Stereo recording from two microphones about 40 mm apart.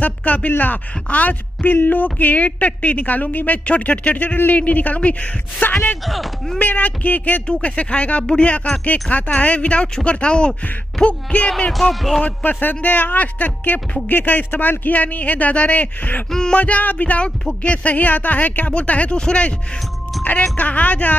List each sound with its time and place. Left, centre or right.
0.0 s a man's voice: left
3.6 s a man's voice: left
6.0 s speech: centre
6.6 s a man's voice: left
7.6 s speech: left
9.1 s speech: left
9.9 s speech: left
11.0 s a sound: centre
11.7 s speech: centre
12.4 s a man's voice: left
16.3 s a sound: centre
16.5 s speech: left
19.1 s speech: left
20.5 s a man's voice: left